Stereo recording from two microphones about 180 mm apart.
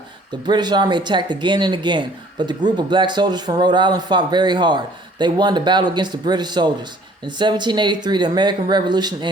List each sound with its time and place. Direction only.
0.4 s speech: 25° right (ahead or behind)